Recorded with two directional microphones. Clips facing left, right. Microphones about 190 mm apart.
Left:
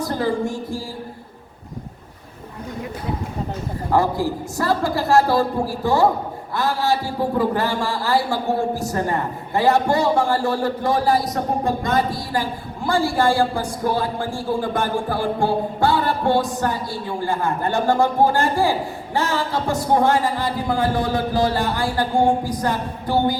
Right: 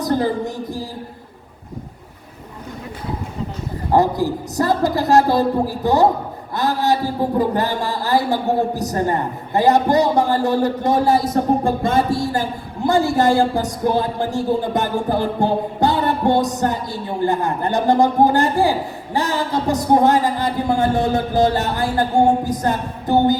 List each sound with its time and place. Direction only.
0.0 s music: 20° right (ahead or behind)
3.9 s a man's voice: 20° right (ahead or behind)